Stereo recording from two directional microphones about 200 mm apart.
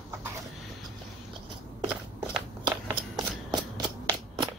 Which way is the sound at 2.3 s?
20° right (ahead or behind).